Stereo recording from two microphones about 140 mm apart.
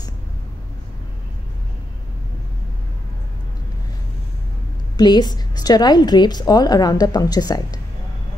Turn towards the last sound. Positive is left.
turn(degrees=25)  # may be behind; listen again after turning